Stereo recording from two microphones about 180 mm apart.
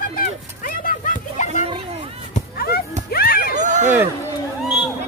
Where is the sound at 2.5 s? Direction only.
60° left (ahead or behind).